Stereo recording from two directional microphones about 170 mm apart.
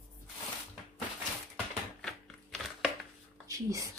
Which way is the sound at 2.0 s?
Centre (ahead or behind).